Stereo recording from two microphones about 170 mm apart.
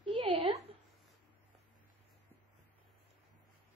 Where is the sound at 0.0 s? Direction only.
30° right (ahead or behind).